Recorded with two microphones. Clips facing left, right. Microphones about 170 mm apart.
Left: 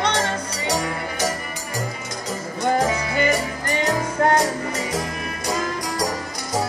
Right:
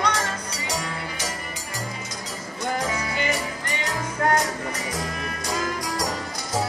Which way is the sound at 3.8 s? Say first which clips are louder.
Left 6 dB; 35° left (ahead or behind).